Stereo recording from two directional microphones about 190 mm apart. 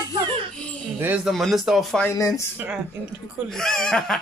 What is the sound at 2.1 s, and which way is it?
Speech, 15° left (ahead or behind).